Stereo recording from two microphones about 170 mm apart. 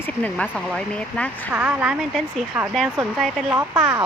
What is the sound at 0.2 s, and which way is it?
Speech, 5° left (ahead or behind).